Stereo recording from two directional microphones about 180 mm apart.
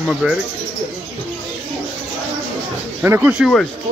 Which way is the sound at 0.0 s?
5° right (ahead or behind).